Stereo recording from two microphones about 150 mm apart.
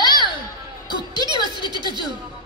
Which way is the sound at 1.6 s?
30° right (ahead or behind).